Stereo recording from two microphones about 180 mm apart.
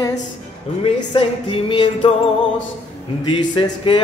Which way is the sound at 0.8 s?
30° left (ahead or behind).